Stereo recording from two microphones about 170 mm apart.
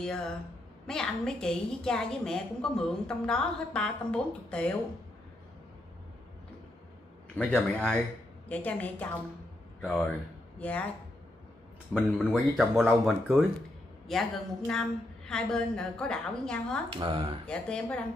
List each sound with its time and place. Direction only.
0.8 s a woman's voice: 5° left (ahead or behind)
7.3 s a man's voice: 5° left (ahead or behind)
11.9 s a woman's voice: centre (ahead or behind)
16.9 s speech: 30° right (ahead or behind)
17.5 s a woman's voice: 5° left (ahead or behind)